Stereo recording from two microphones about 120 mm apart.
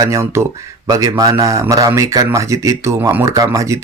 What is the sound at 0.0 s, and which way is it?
Speech, 25° right (ahead or behind).